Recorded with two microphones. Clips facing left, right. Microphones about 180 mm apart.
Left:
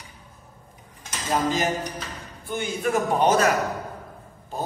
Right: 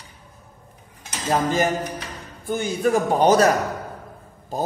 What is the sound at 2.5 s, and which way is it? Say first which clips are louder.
A man's voice: right 4 dB; 40° right (ahead or behind).